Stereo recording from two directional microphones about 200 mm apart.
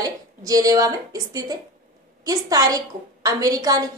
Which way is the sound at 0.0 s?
15° right (ahead or behind).